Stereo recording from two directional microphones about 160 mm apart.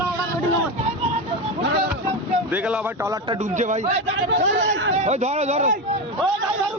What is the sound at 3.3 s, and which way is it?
Speech, 45° right (ahead or behind).